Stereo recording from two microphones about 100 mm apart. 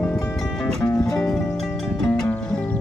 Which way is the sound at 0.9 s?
35° left (ahead or behind).